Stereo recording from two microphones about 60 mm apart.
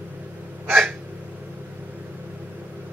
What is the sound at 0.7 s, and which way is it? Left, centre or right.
Hiccup, right.